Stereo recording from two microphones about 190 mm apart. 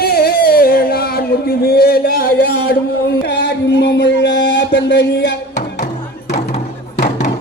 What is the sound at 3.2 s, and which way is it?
Music, 60° left (ahead or behind).